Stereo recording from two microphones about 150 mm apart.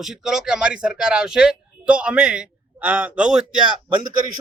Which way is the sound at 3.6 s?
30° right (ahead or behind).